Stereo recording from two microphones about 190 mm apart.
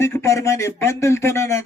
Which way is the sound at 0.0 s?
15° left (ahead or behind).